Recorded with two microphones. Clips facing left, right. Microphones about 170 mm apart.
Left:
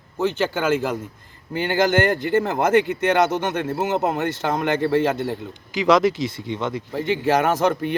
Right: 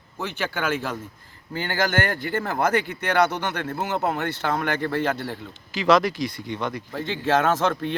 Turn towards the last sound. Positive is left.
turn(degrees=15)  # may be behind; listen again after turning